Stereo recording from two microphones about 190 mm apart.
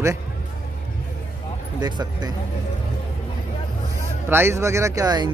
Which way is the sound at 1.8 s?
20° right (ahead or behind).